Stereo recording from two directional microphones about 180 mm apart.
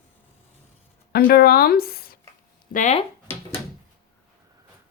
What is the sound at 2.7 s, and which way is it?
Speech, 40° left (ahead or behind).